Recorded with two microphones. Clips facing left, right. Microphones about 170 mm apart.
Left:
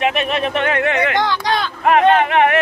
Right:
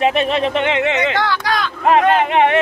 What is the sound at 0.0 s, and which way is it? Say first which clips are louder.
Speech: right 3 dB; 30° right (ahead or behind).